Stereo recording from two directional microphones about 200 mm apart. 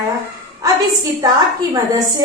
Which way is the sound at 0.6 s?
15° right (ahead or behind).